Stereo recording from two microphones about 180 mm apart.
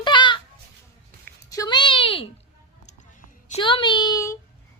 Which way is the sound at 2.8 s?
40° left (ahead or behind).